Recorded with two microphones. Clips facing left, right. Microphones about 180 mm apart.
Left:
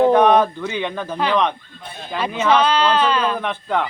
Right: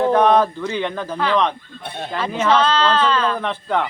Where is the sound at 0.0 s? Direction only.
10° left (ahead or behind).